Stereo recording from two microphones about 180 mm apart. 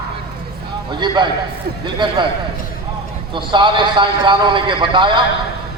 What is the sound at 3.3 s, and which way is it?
A man's voice, 25° right (ahead or behind).